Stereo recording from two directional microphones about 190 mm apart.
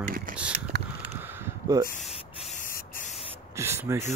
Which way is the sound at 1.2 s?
10° right (ahead or behind).